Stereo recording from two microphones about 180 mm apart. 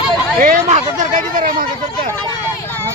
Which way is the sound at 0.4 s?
45° right (ahead or behind).